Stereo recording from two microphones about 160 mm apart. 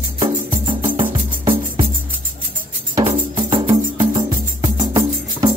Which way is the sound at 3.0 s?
30° right (ahead or behind).